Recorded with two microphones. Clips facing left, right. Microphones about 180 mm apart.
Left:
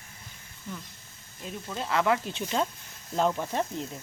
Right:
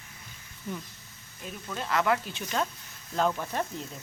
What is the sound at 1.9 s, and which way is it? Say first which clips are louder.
Speech: left 1 dB; 15° left (ahead or behind).